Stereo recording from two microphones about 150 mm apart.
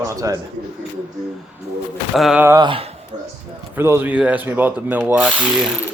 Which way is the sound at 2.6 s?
35° right (ahead or behind).